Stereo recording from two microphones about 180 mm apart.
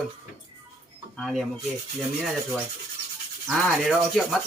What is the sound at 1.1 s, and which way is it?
Speech, centre (ahead or behind).